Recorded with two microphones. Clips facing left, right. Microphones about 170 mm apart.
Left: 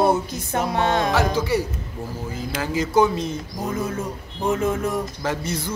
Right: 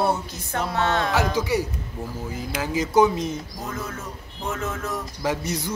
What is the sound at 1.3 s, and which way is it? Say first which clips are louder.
Speech: left 1 dB; 15° right (ahead or behind).